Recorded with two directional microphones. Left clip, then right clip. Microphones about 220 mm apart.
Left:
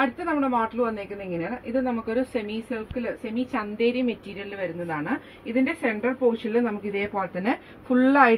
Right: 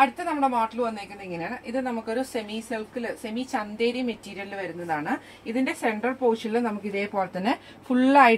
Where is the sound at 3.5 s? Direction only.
20° right (ahead or behind).